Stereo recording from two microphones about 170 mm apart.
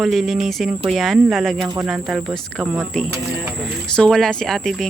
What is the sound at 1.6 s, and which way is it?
Speech, 20° right (ahead or behind).